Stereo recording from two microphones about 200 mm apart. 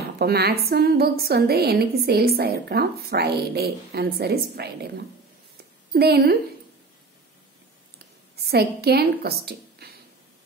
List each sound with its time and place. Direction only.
0.2 s a woman's voice: 50° right (ahead or behind)
8.5 s a woman's voice: 55° right (ahead or behind)